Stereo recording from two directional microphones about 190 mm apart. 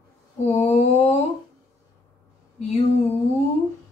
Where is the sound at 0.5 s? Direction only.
35° left (ahead or behind).